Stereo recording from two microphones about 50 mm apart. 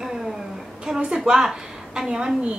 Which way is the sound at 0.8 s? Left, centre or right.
Centre.